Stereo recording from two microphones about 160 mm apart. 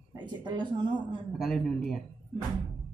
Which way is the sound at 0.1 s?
30° right (ahead or behind).